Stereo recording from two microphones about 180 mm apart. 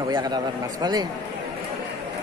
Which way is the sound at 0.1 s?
25° right (ahead or behind).